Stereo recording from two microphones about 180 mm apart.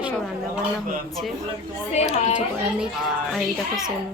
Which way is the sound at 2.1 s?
35° left (ahead or behind).